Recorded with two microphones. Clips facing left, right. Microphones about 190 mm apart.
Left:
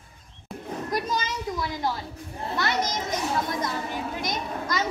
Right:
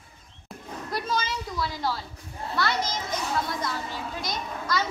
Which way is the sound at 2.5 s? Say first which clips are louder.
Left 1 dB; 20° left (ahead or behind).